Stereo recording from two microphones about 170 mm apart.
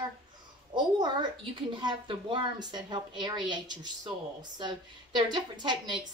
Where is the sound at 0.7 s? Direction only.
25° right (ahead or behind).